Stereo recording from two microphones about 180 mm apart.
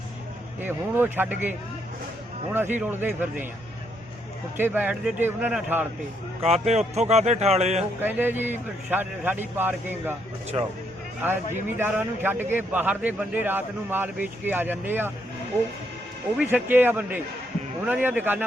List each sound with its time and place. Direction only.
0.6 s a man's voice: 10° right (ahead or behind)
4.5 s a man's voice: 10° right (ahead or behind)
6.4 s speech: 35° right (ahead or behind)
8.0 s a man's voice: 10° right (ahead or behind)
11.5 s a man's voice: 10° right (ahead or behind)
16.4 s a man's voice: 10° right (ahead or behind)